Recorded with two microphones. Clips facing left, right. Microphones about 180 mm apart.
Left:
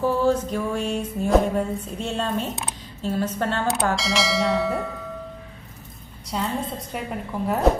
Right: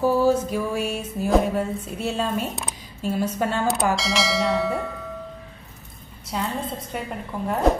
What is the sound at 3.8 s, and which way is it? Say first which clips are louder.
A woman's voice: even; centre (ahead or behind).